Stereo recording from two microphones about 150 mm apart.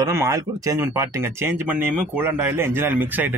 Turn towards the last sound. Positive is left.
turn(degrees=-10)  # may be behind; listen again after turning